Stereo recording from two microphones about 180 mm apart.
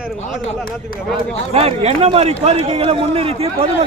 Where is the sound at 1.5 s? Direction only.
35° right (ahead or behind).